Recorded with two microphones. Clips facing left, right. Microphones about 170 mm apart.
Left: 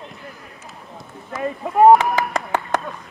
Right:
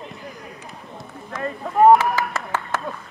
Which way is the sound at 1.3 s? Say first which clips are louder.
Left 3 dB; 10° left (ahead or behind).